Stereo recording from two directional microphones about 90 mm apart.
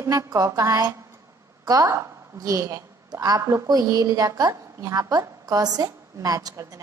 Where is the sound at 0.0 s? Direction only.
35° right (ahead or behind).